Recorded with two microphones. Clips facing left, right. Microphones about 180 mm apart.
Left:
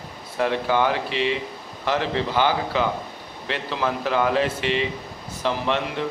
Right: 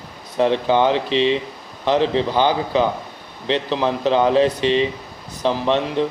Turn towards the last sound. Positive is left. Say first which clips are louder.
# right 5 dB
turn(degrees=-20)  # may be behind; listen again after turning